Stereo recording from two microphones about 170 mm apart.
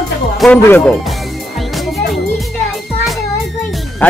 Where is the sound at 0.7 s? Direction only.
10° left (ahead or behind).